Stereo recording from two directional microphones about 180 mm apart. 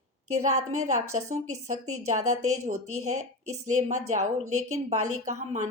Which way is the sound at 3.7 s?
40° right (ahead or behind).